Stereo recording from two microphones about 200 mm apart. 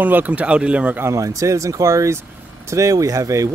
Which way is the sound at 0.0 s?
10° right (ahead or behind).